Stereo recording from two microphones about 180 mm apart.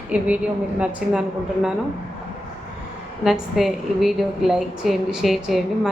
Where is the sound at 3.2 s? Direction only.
Centre (ahead or behind).